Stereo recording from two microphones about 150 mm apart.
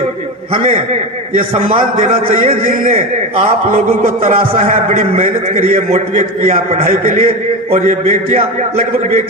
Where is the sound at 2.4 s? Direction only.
40° right (ahead or behind).